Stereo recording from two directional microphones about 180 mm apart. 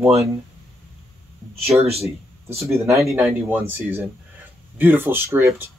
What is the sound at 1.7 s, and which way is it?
Speech, 15° right (ahead or behind).